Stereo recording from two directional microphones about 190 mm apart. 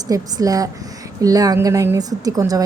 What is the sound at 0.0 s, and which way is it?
A woman's voice, 20° right (ahead or behind).